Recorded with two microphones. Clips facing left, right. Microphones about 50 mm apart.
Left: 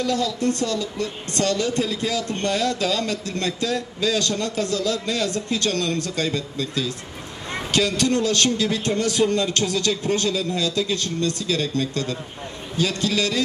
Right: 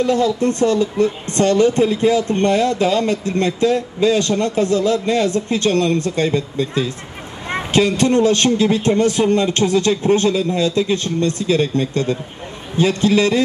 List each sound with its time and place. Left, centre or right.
0.0 s a woman's voice: right